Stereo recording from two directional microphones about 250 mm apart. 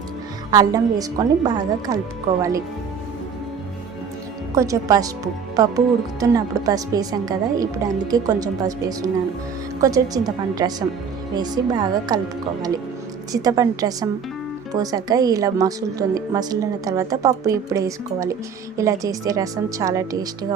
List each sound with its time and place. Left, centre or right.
0.5 s a woman's voice: centre
4.5 s a woman's voice: centre
13.3 s a woman's voice: centre